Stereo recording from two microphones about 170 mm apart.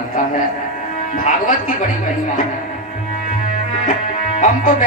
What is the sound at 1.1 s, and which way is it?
Speech, 50° left (ahead or behind).